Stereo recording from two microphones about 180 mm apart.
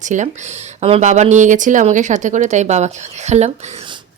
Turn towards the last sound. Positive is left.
turn(degrees=-40)  # may be behind; listen again after turning